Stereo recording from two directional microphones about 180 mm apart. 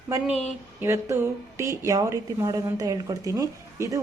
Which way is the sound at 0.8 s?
15° right (ahead or behind).